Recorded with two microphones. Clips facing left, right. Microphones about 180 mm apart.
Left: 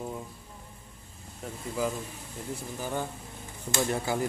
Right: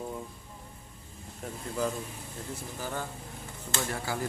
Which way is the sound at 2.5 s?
15° left (ahead or behind).